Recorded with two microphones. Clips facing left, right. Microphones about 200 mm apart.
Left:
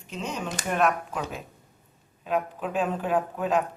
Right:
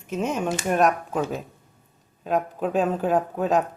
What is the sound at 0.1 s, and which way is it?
Speech, 50° right (ahead or behind).